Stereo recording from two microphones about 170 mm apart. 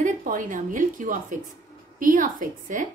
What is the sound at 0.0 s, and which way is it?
A woman's voice, 50° right (ahead or behind).